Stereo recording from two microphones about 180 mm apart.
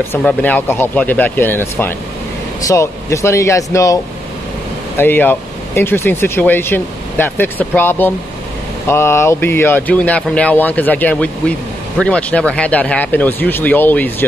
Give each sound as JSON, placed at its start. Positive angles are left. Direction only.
{"t": 0.1, "sound": "speech", "side_deg": 10}